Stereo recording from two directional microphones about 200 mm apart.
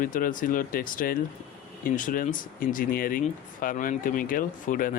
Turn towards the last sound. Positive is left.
turn(degrees=45)  # may be behind; listen again after turning